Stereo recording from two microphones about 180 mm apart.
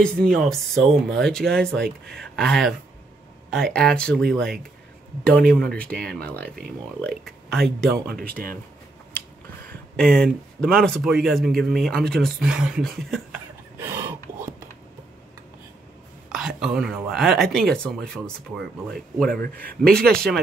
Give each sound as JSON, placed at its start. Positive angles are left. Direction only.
{"t": 0.0, "sound": "speech", "side_deg": 5}
{"t": 8.1, "sound": "speech", "side_deg": -55}
{"t": 9.9, "sound": "speech", "side_deg": 5}
{"t": 16.3, "sound": "speech", "side_deg": -5}